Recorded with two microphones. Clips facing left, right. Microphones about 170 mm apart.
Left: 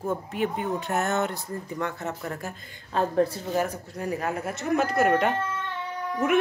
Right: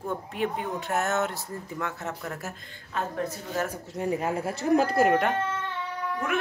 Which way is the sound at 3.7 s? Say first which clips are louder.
Right 2 dB; 20° right (ahead or behind).